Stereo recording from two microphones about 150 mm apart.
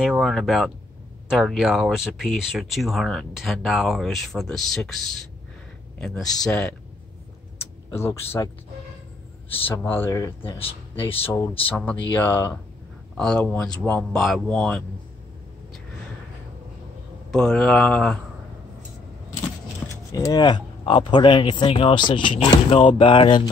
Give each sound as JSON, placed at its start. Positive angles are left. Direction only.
{"t": 0.0, "sound": "speech", "side_deg": 0}
{"t": 7.9, "sound": "speech", "side_deg": 15}
{"t": 9.7, "sound": "speech", "side_deg": 15}
{"t": 10.6, "sound": "speech", "side_deg": 40}
{"t": 11.7, "sound": "speech", "side_deg": 10}
{"t": 17.3, "sound": "speech", "side_deg": 5}
{"t": 20.1, "sound": "speech", "side_deg": 20}